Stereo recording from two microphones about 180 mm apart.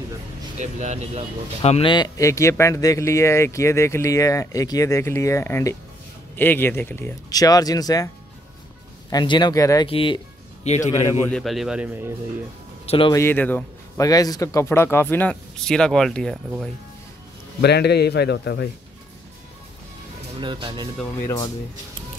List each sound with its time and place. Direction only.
0.6 s speech: 40° right (ahead or behind)
1.6 s speech: 35° left (ahead or behind)
9.1 s speech: 25° left (ahead or behind)
9.8 s music: 30° left (ahead or behind)
11.2 s speech: centre (ahead or behind)
12.8 s speech: 30° left (ahead or behind)
13.1 s speech: 10° left (ahead or behind)
17.6 s a man's voice: 65° left (ahead or behind)
20.3 s speech: 25° right (ahead or behind)